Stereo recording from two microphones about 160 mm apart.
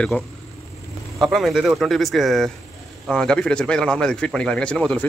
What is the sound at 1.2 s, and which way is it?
A man's voice, centre (ahead or behind).